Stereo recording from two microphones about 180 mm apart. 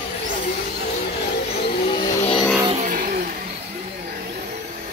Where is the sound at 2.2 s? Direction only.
30° left (ahead or behind).